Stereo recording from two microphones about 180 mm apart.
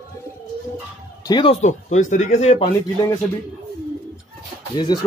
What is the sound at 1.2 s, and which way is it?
Speech, 25° left (ahead or behind).